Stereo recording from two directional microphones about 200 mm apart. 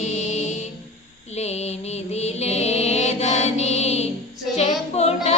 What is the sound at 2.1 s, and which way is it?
Music, 35° left (ahead or behind).